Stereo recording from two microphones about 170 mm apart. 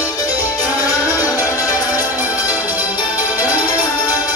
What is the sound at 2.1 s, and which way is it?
Music, 10° right (ahead or behind).